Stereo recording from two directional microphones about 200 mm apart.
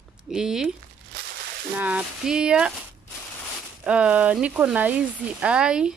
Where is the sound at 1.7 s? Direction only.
5° right (ahead or behind).